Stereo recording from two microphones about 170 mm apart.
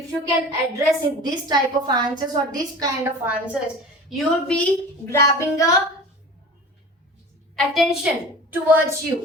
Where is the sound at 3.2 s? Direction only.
10° right (ahead or behind).